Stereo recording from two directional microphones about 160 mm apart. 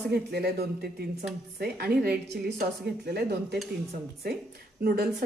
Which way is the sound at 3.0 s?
90° right.